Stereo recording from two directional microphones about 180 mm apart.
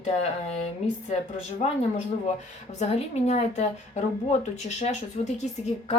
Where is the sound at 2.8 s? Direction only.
35° left (ahead or behind).